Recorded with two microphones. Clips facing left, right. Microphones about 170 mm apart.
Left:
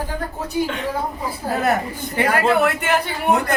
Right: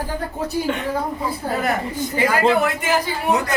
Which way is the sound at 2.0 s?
65° left (ahead or behind).